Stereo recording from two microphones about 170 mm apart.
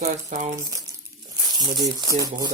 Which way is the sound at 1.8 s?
20° right (ahead or behind).